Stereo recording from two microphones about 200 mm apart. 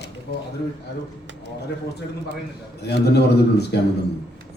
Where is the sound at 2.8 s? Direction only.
55° left (ahead or behind).